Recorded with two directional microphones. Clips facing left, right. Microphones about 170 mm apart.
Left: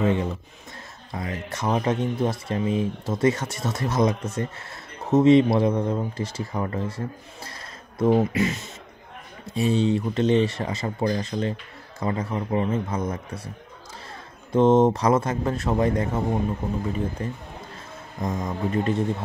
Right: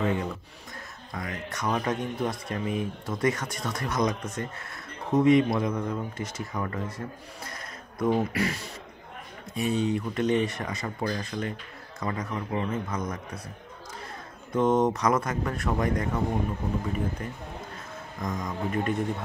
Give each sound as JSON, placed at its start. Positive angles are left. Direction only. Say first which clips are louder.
{"t": 0.0, "sound": "a sound", "louder": "left 5 dB", "side_deg": 25}
{"t": 1.1, "sound": "speech", "louder": "left 4 dB", "side_deg": 25}
{"t": 8.0, "sound": "speech", "louder": "left 5 dB", "side_deg": 25}
{"t": 14.5, "sound": "speech", "louder": "left 6 dB", "side_deg": 25}
{"t": 17.2, "sound": "speech", "louder": "left 4 dB", "side_deg": 30}